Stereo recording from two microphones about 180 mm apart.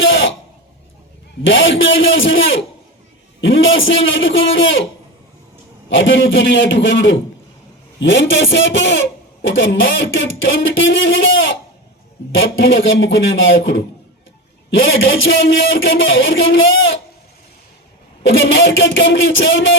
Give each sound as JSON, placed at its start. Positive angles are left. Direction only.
{"t": 0.0, "sound": "a sound", "side_deg": 90}
{"t": 1.5, "sound": "speech", "side_deg": 90}
{"t": 5.9, "sound": "speech", "side_deg": 90}
{"t": 18.2, "sound": "speech", "side_deg": 90}